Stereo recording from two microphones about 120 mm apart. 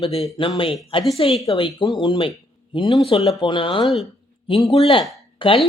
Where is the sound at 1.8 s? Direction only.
40° left (ahead or behind).